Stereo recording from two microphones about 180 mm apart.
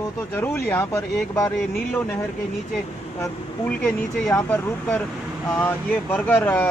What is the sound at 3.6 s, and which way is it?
Speech, 5° left (ahead or behind).